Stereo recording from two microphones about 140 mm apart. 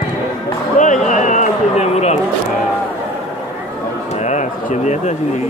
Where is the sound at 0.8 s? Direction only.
65° left (ahead or behind).